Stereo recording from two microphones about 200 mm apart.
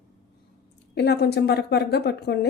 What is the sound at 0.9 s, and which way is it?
A woman's voice, 55° left (ahead or behind).